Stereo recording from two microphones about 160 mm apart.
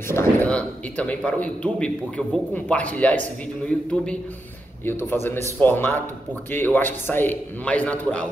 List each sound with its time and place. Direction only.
0.1 s a man's voice: 15° left (ahead or behind)